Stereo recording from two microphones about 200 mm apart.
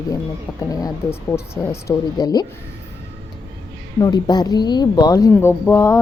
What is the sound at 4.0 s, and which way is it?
Speech, 20° left (ahead or behind).